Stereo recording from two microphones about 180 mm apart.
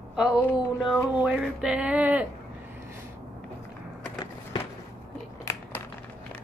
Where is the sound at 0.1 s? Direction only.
5° right (ahead or behind).